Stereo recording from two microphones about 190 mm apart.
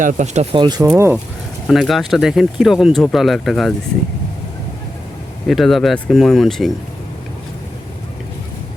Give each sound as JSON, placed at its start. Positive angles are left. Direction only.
{"t": 0.0, "sound": "speech", "side_deg": -40}
{"t": 0.5, "sound": "speech", "side_deg": -20}
{"t": 1.6, "sound": "speech", "side_deg": 0}
{"t": 5.5, "sound": "speech", "side_deg": 0}